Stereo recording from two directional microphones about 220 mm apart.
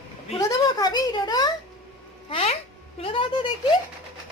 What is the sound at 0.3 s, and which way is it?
A woman's voice, 15° left (ahead or behind).